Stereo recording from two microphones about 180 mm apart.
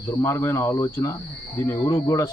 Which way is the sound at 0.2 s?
15° left (ahead or behind).